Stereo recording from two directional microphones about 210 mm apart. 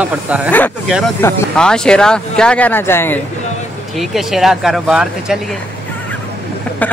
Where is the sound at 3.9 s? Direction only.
Centre (ahead or behind).